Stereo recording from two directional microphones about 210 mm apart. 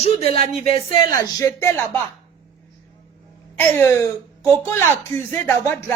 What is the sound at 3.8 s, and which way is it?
Speech, 10° left (ahead or behind).